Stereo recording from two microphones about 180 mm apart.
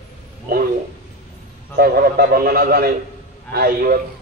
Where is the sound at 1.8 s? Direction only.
60° right (ahead or behind).